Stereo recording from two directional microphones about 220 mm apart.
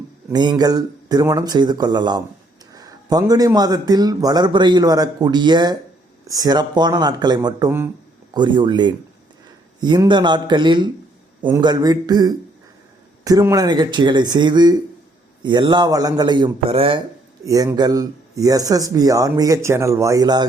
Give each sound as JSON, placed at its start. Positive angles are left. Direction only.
{"t": 0.3, "sound": "speech", "side_deg": -20}